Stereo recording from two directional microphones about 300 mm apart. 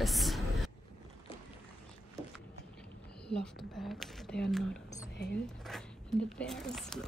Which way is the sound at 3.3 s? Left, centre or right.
Centre.